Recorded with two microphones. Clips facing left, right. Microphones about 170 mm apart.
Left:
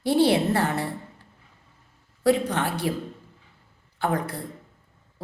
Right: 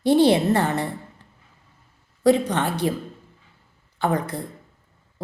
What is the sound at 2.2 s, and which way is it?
Speech, 5° left (ahead or behind).